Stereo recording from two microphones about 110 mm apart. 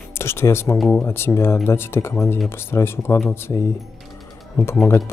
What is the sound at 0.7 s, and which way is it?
Speech, 5° left (ahead or behind).